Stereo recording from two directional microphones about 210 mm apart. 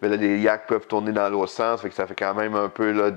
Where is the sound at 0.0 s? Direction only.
15° left (ahead or behind).